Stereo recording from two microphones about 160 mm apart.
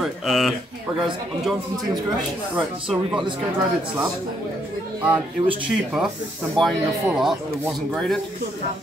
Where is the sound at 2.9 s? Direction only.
Centre (ahead or behind).